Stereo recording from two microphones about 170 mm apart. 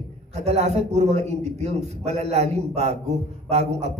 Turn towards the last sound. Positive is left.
turn(degrees=-40)  # may be behind; listen again after turning